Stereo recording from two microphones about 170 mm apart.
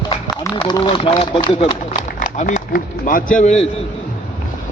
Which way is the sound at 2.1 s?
45° left (ahead or behind).